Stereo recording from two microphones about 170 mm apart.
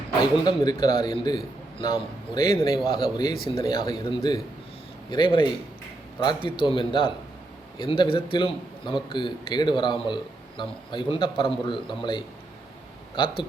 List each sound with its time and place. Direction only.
0.2 s a man's voice: 25° left (ahead or behind)